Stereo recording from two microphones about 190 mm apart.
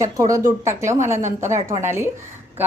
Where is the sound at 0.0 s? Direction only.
15° right (ahead or behind).